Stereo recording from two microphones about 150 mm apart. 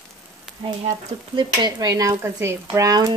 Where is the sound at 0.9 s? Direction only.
30° right (ahead or behind).